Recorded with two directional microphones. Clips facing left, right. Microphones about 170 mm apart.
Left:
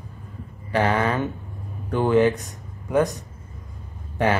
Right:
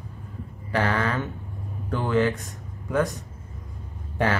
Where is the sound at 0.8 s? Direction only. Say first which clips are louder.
Left 4 dB; 20° left (ahead or behind).